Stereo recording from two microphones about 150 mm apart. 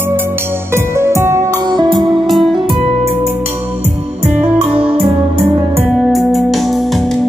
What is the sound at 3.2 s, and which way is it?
Music, 15° right (ahead or behind).